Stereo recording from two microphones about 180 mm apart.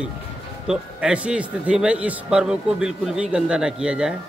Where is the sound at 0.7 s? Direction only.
5° right (ahead or behind).